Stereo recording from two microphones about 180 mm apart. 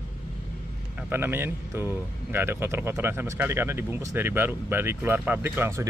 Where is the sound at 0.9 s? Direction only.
10° right (ahead or behind).